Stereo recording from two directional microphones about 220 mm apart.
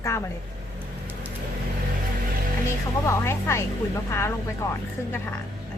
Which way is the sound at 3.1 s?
10° left (ahead or behind).